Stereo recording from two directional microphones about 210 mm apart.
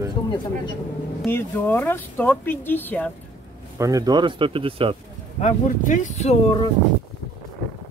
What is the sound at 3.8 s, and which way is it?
Speech, 15° right (ahead or behind).